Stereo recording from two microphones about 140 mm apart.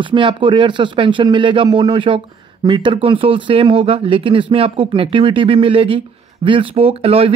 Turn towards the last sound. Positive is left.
turn(degrees=-45)  # may be behind; listen again after turning